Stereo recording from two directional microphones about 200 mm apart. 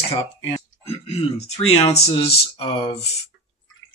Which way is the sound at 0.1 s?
30° left (ahead or behind).